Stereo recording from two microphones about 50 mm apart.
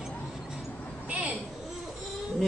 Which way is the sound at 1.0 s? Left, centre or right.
Right.